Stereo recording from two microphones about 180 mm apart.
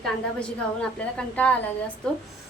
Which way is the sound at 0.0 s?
5° left (ahead or behind).